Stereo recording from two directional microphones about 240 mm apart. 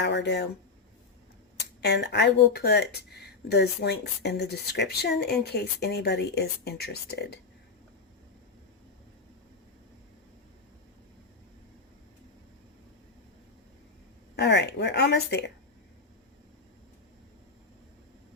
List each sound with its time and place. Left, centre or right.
0.0 s speech: left
1.8 s speech: left
14.3 s speech: left